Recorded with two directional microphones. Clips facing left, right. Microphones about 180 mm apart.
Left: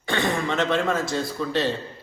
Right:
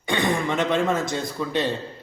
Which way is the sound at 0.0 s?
15° right (ahead or behind).